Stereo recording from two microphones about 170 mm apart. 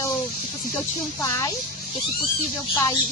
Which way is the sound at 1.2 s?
15° left (ahead or behind).